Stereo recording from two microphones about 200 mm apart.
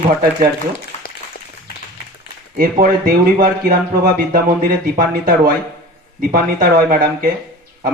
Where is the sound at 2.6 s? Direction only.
45° right (ahead or behind).